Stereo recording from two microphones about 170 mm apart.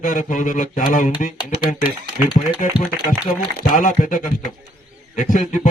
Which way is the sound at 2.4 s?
50° left (ahead or behind).